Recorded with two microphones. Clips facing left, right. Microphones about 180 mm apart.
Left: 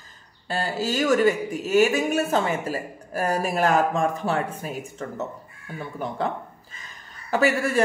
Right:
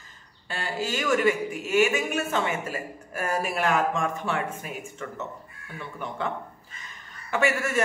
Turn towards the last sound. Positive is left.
turn(degrees=35)  # may be behind; listen again after turning